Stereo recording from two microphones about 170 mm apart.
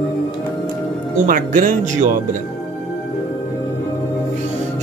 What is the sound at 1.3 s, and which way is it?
Speech, 50° right (ahead or behind).